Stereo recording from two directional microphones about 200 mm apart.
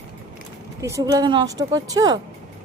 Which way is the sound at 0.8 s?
15° right (ahead or behind).